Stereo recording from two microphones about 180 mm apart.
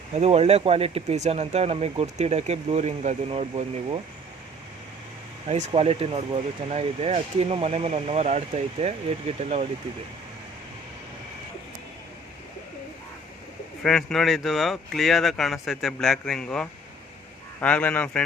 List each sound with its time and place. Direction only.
0.1 s speech: 35° right (ahead or behind)
5.5 s speech: 40° right (ahead or behind)
13.8 s a man's voice: centre (ahead or behind)